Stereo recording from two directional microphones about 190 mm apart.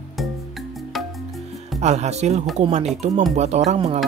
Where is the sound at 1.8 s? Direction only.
35° right (ahead or behind).